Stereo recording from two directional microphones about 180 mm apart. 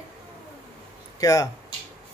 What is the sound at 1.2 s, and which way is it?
Speech, 20° left (ahead or behind).